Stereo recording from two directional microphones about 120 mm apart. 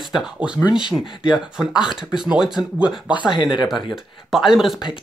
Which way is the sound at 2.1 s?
5° right (ahead or behind).